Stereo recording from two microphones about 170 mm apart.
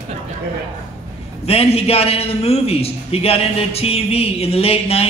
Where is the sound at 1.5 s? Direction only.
35° left (ahead or behind).